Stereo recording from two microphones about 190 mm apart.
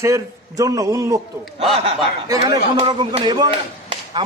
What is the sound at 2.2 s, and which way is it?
A man's voice, 20° right (ahead or behind).